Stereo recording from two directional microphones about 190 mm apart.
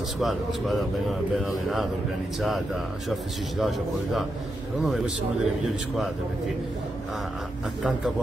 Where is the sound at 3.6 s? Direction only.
Centre (ahead or behind).